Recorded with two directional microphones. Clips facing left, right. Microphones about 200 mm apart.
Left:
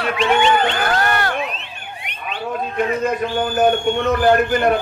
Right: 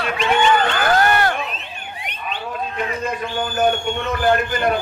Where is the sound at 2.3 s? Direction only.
45° left (ahead or behind).